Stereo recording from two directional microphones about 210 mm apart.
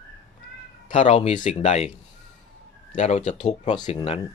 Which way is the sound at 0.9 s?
35° left (ahead or behind).